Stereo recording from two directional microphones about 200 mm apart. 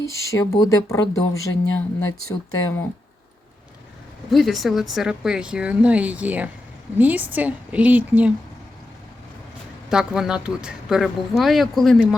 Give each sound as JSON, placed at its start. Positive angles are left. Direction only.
{"t": 0.0, "sound": "speech", "side_deg": 15}
{"t": 1.6, "sound": "speech", "side_deg": 90}
{"t": 4.3, "sound": "a woman's voice", "side_deg": 0}
{"t": 9.9, "sound": "speech", "side_deg": -5}